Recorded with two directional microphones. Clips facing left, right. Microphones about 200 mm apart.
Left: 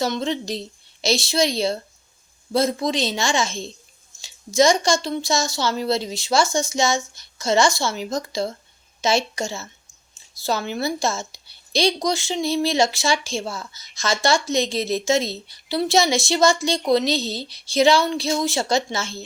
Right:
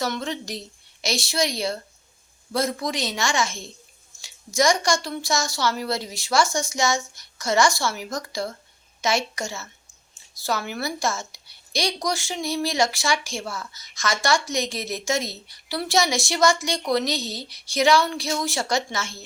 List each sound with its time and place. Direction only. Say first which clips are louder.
0.0 s a woman's voice: left 4 dB; 25° left (ahead or behind)